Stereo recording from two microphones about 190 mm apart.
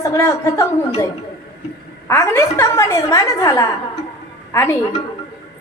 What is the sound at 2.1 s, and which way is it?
A woman's voice, 15° left (ahead or behind).